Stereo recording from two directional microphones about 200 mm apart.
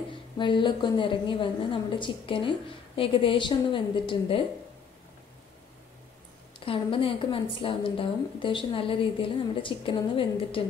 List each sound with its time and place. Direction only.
0.4 s a woman's voice: 25° left (ahead or behind)
6.6 s a woman's voice: 25° left (ahead or behind)